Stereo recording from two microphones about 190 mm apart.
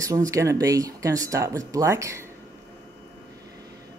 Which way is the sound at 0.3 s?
15° right (ahead or behind).